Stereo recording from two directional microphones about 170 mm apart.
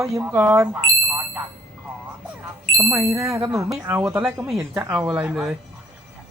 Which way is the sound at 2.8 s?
15° right (ahead or behind).